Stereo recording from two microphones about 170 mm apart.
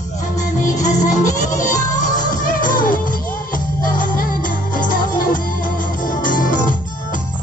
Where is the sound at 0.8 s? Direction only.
50° left (ahead or behind).